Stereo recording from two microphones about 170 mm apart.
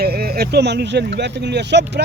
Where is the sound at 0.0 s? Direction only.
65° right (ahead or behind).